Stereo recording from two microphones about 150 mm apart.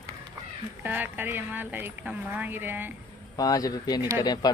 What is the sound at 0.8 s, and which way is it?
A woman's voice, 10° right (ahead or behind).